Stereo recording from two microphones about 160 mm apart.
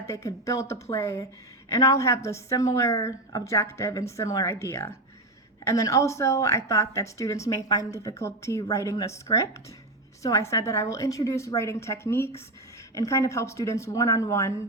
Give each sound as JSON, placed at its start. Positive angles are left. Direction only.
{"t": 0.1, "sound": "a woman's voice", "side_deg": 20}